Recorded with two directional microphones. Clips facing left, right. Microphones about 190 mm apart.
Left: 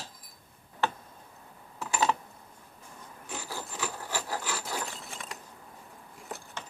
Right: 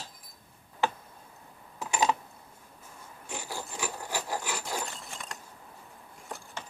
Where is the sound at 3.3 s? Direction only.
15° right (ahead or behind).